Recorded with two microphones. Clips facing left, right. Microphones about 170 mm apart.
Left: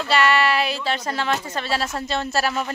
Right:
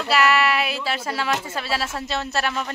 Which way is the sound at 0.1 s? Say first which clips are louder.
Even; 5° right (ahead or behind).